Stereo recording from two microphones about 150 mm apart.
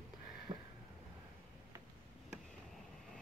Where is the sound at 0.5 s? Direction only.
30° right (ahead or behind).